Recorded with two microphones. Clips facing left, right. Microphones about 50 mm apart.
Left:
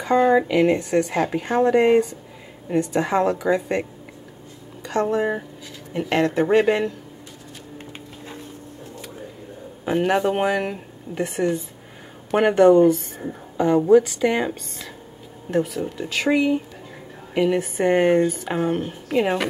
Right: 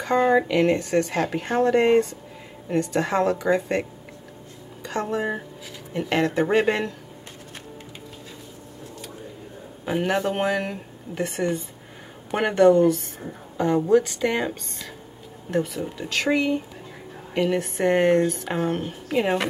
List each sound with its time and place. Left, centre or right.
0.0 s speech: centre
4.8 s speech: centre
9.8 s speech: centre
12.7 s speech: centre
13.6 s speech: centre